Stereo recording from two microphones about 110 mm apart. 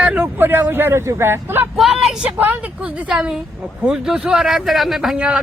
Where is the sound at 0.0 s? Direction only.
10° right (ahead or behind).